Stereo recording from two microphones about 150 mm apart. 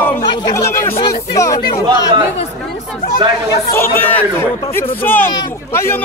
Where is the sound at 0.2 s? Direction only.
30° left (ahead or behind).